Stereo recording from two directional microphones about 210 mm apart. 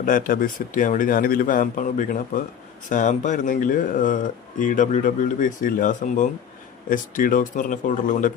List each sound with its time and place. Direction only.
0.0 s speech: 40° left (ahead or behind)